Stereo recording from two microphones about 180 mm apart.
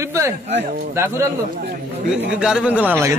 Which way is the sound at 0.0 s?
15° right (ahead or behind).